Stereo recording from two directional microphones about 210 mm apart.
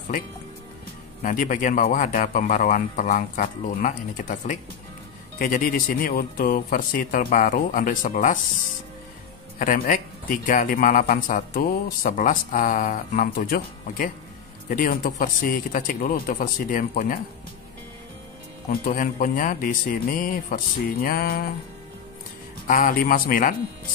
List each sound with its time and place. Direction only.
1.2 s speech: 40° left (ahead or behind)
9.6 s speech: 40° left (ahead or behind)
18.7 s speech: 40° left (ahead or behind)
22.7 s speech: 40° left (ahead or behind)